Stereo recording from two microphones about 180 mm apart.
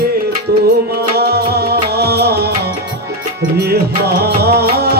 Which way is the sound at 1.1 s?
60° right (ahead or behind).